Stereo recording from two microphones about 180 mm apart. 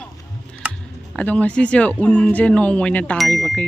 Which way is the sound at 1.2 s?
5° left (ahead or behind).